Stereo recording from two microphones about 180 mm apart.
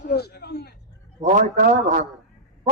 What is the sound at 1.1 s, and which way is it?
Speech, 45° right (ahead or behind).